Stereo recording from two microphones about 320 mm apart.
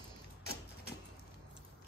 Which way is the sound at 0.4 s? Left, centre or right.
Left.